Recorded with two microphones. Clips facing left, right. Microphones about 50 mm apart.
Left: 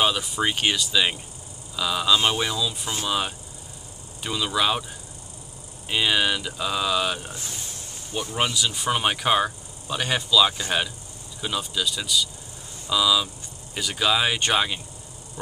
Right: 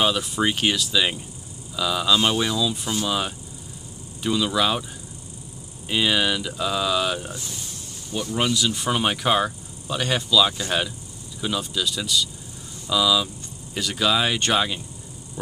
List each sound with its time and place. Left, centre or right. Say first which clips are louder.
0.0 s speech: right 1 dB; centre
5.9 s speech: right 1 dB; centre
8.1 s speech: right 2 dB; centre
8.5 s speech: right 1 dB; centre